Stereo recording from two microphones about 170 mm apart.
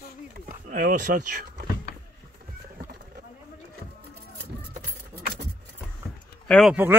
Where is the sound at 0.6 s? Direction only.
55° right (ahead or behind).